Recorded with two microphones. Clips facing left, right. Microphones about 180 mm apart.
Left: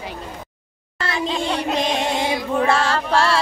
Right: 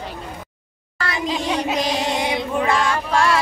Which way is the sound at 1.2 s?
5° right (ahead or behind).